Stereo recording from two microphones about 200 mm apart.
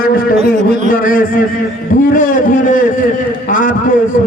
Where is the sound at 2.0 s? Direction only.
40° left (ahead or behind).